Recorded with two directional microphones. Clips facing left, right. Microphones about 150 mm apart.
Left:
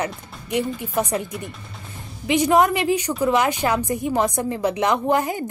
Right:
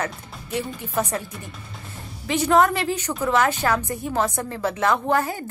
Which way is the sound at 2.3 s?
15° left (ahead or behind).